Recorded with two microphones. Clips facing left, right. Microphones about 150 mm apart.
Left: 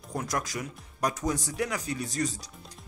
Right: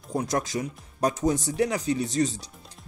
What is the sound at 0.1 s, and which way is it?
Speech, 25° right (ahead or behind).